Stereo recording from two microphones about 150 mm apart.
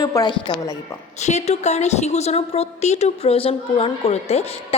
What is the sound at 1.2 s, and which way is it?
A woman's voice, 50° left (ahead or behind).